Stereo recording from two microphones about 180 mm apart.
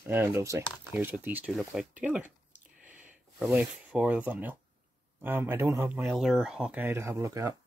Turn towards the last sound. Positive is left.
turn(degrees=-15)  # may be behind; listen again after turning